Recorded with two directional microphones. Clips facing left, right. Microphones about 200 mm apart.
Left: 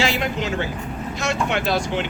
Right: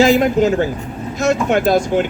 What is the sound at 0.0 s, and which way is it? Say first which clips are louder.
Speech: right 11 dB; 45° right (ahead or behind).